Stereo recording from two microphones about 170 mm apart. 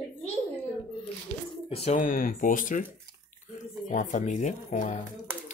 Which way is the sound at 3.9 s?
50° left (ahead or behind).